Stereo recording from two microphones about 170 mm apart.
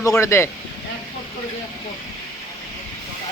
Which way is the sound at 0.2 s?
15° left (ahead or behind).